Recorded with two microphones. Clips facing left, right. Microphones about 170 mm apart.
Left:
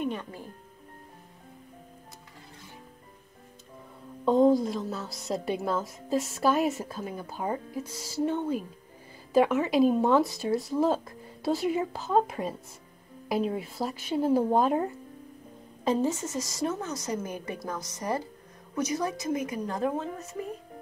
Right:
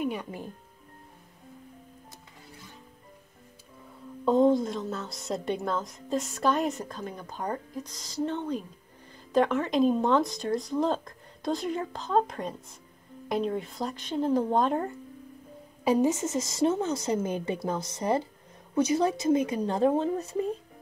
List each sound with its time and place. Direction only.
0.0 s speech: 10° right (ahead or behind)
4.2 s a woman's voice: centre (ahead or behind)
15.8 s a woman's voice: 15° right (ahead or behind); by 20.4 s 30° right (ahead or behind)